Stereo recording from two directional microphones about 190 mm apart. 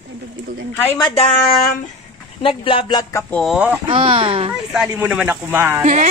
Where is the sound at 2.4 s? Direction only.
30° left (ahead or behind).